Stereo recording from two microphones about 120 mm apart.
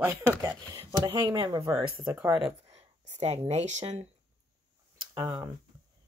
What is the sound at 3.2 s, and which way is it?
Speech, 60° right (ahead or behind).